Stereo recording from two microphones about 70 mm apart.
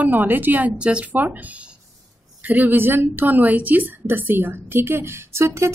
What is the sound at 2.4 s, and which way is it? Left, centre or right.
A woman's voice, right.